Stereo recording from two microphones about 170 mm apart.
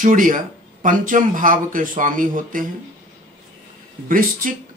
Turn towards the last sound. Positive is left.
turn(degrees=-55)  # may be behind; listen again after turning